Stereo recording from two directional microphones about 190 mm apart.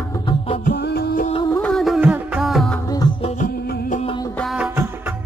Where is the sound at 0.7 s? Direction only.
50° left (ahead or behind).